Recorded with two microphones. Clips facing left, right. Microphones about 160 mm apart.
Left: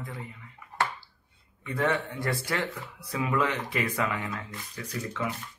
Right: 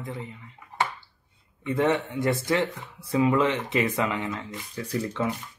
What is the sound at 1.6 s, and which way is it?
Speech, 20° right (ahead or behind).